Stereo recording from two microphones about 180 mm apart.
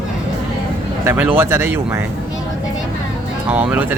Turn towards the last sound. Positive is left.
turn(degrees=-10)  # may be behind; listen again after turning